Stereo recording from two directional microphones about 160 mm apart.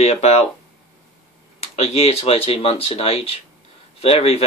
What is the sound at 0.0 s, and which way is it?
Speech, 40° left (ahead or behind).